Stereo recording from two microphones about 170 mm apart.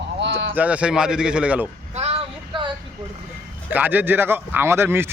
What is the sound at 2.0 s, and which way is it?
Child singing, 30° right (ahead or behind).